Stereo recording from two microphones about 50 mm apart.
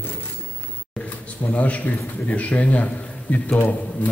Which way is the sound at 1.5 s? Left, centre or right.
Left.